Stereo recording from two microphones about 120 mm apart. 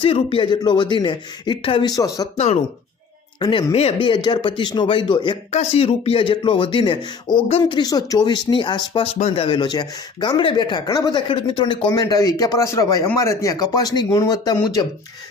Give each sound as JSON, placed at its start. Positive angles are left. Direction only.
{"t": 0.0, "sound": "speech", "side_deg": 50}
{"t": 1.9, "sound": "a man's voice", "side_deg": 30}
{"t": 3.4, "sound": "speech", "side_deg": 35}
{"t": 3.7, "sound": "speech", "side_deg": 60}
{"t": 3.9, "sound": "speech", "side_deg": 40}
{"t": 5.5, "sound": "speech", "side_deg": 65}
{"t": 9.1, "sound": "speech", "side_deg": 60}
{"t": 9.6, "sound": "a man's voice", "side_deg": 35}